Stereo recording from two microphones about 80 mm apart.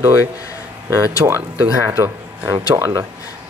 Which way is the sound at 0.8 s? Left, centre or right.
Right.